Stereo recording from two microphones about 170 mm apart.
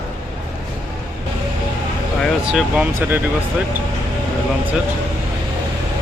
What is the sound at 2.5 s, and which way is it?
Speech, 5° right (ahead or behind).